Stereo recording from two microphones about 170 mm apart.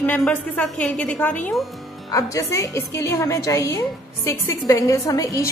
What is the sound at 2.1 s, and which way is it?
A woman's voice, 20° left (ahead or behind).